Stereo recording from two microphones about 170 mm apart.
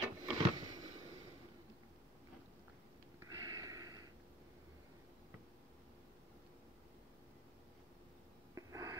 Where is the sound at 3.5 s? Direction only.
20° right (ahead or behind).